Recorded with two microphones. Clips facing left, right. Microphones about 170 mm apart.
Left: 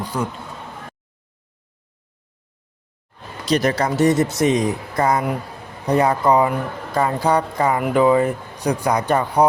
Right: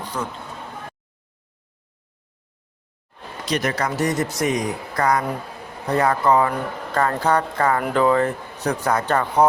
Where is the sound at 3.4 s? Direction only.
30° left (ahead or behind).